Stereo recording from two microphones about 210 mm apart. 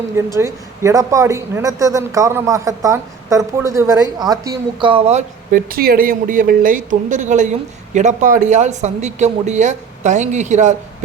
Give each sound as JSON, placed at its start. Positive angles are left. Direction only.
{"t": 0.3, "sound": "speech", "side_deg": -15}